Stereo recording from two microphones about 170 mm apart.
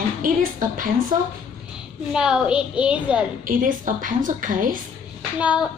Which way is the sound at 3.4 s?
50° right (ahead or behind).